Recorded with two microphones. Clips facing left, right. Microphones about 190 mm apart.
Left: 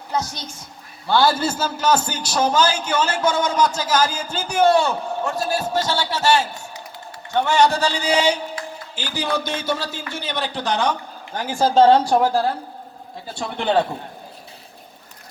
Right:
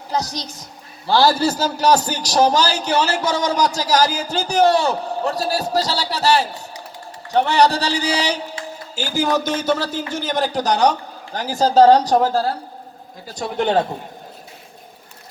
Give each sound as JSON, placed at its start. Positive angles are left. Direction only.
{"t": 0.1, "sound": "a man's voice", "side_deg": -35}